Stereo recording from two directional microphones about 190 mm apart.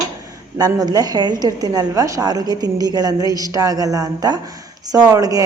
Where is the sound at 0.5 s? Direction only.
20° right (ahead or behind).